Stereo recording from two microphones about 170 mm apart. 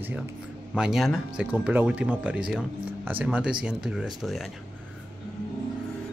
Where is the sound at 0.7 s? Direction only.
Centre (ahead or behind).